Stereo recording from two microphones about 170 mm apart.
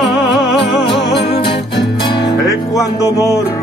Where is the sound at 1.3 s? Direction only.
30° left (ahead or behind).